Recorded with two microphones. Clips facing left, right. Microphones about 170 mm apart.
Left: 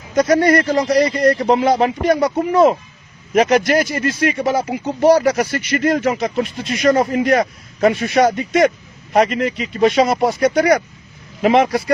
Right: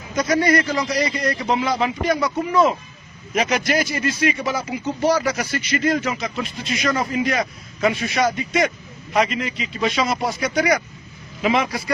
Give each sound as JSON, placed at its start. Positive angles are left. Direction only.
{"t": 0.1, "sound": "speech", "side_deg": 40}
{"t": 10.6, "sound": "speech", "side_deg": 40}